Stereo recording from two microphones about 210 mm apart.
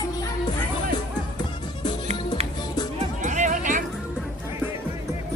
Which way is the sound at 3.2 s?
35° right (ahead or behind).